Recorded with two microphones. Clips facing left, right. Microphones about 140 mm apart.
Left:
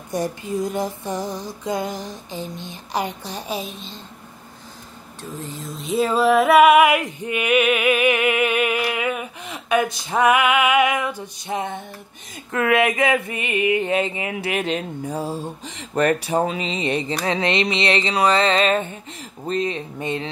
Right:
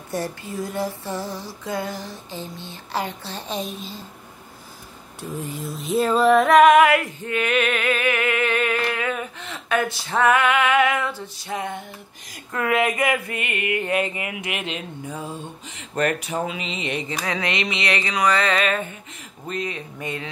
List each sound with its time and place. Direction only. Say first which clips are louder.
0.1 s female singing: left 4 dB; 15° left (ahead or behind); by 4.0 s centre (ahead or behind)
5.3 s speech: right 2 dB; 10° right (ahead or behind)
5.8 s female singing: even; centre (ahead or behind); by 11.8 s 25° left (ahead or behind)
13.4 s music: left 5 dB; 20° left (ahead or behind)
14.3 s speech: left 6 dB; 40° left (ahead or behind)
17.2 s music: left 4 dB; 30° left (ahead or behind)